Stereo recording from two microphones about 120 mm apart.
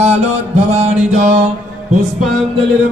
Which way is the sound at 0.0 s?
65° right (ahead or behind).